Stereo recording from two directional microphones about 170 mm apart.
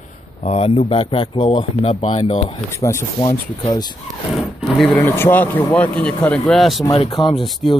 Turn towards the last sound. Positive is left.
turn(degrees=30)  # may be behind; listen again after turning